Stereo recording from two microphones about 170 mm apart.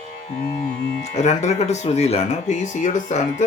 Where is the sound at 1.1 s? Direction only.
40° left (ahead or behind).